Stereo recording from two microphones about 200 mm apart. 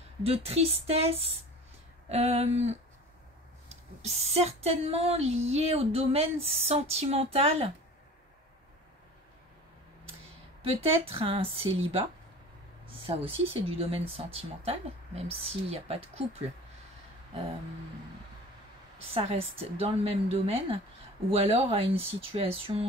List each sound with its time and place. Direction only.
0.2 s a sound: 30° right (ahead or behind)
10.6 s speech: 30° right (ahead or behind)
19.0 s speech: 30° right (ahead or behind)